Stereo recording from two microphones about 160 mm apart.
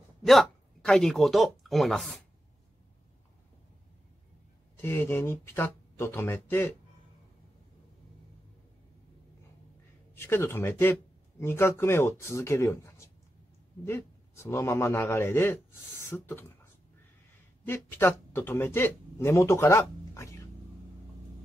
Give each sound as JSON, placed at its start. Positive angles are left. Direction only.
{"t": 0.2, "sound": "speech", "side_deg": 0}
{"t": 4.7, "sound": "a man's voice", "side_deg": 15}
{"t": 10.1, "sound": "a man's voice", "side_deg": 15}
{"t": 17.6, "sound": "speech", "side_deg": 15}